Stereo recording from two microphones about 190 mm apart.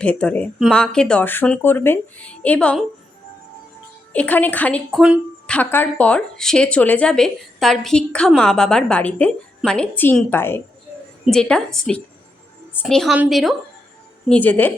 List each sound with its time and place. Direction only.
0.0 s speech: 5° left (ahead or behind)
4.1 s speech: 10° left (ahead or behind)
5.5 s speech: 10° left (ahead or behind)